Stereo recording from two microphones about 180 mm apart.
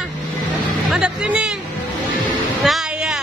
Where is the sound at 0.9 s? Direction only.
5° right (ahead or behind).